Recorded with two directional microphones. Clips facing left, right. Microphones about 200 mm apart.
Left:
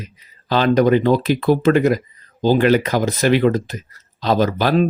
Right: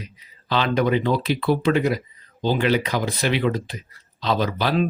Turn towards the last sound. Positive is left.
turn(degrees=45)  # may be behind; listen again after turning